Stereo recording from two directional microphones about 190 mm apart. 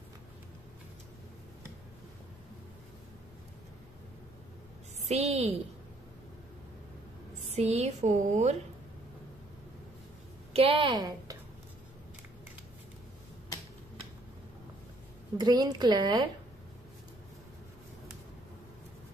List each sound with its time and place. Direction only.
5.0 s a woman's voice: 35° right (ahead or behind)
7.5 s a woman's voice: 35° right (ahead or behind)
10.5 s a woman's voice: 30° right (ahead or behind)
15.3 s speech: 20° right (ahead or behind)